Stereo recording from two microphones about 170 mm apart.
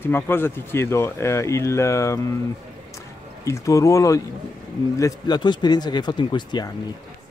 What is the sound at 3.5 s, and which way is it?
Speech, 20° left (ahead or behind).